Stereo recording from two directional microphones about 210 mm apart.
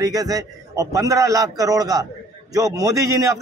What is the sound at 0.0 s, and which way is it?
A man's voice, 15° right (ahead or behind).